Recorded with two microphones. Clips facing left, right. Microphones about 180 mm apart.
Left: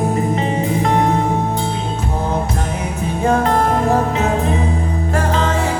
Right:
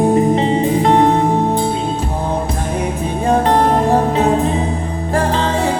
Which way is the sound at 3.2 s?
35° right (ahead or behind).